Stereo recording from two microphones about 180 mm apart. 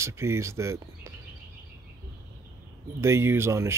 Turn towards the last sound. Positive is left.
turn(degrees=-15)  # may be behind; listen again after turning